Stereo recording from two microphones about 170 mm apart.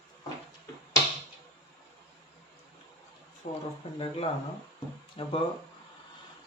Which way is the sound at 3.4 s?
45° left (ahead or behind).